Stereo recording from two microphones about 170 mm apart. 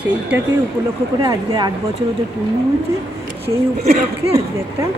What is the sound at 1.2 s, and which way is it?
Speech, 25° right (ahead or behind).